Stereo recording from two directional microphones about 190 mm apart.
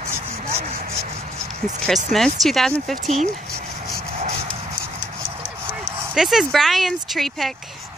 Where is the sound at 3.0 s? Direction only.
40° right (ahead or behind).